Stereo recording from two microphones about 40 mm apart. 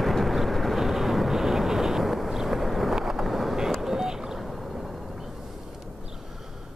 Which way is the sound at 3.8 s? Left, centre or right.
Centre.